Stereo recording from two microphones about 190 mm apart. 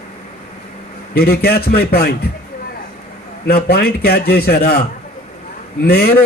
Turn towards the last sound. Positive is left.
turn(degrees=55)  # may be behind; listen again after turning